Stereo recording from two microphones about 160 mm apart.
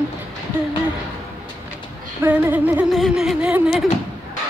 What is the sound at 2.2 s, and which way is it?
Music, 10° right (ahead or behind).